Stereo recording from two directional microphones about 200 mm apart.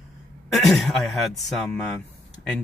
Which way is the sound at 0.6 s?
Centre (ahead or behind).